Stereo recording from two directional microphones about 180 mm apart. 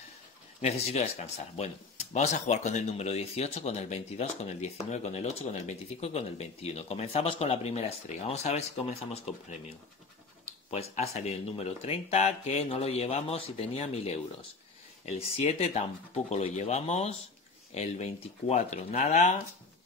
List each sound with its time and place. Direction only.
0.6 s speech: 35° left (ahead or behind)
10.7 s speech: 35° left (ahead or behind)